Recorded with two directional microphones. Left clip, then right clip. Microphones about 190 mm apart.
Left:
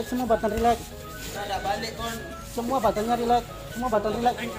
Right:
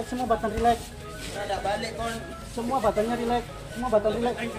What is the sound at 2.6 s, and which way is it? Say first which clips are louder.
Speech: left 1 dB; 50° left (ahead or behind).